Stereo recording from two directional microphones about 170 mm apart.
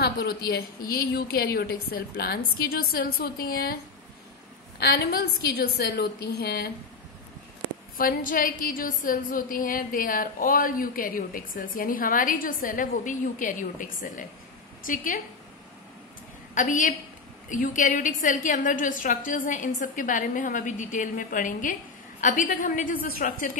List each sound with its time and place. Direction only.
0.0 s a woman's voice: 70° left (ahead or behind)
4.7 s a woman's voice: 65° left (ahead or behind)
8.0 s a woman's voice: 55° left (ahead or behind)
16.5 s a woman's voice: 50° left (ahead or behind)